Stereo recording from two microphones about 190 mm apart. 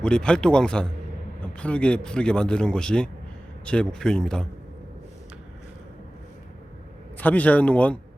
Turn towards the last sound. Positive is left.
turn(degrees=5)  # may be behind; listen again after turning